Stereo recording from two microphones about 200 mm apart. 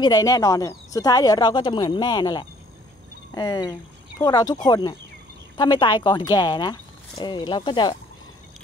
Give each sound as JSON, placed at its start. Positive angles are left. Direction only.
{"t": 0.0, "sound": "speech", "side_deg": 20}